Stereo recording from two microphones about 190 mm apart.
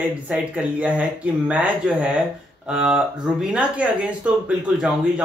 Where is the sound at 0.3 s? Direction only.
5° right (ahead or behind).